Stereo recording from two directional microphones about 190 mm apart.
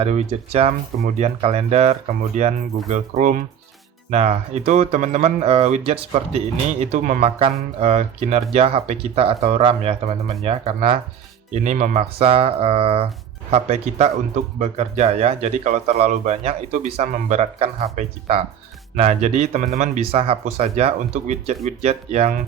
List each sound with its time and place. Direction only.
0.0 s speech: 35° right (ahead or behind)